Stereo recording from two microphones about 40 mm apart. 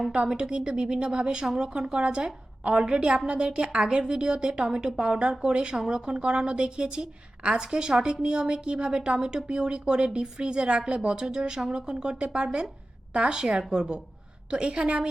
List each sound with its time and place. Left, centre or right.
0.1 s a woman's voice: right